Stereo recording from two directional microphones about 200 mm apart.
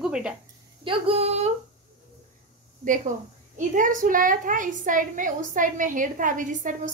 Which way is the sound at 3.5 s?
40° right (ahead or behind).